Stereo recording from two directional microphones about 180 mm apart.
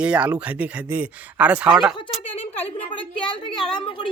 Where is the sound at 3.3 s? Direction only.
30° left (ahead or behind).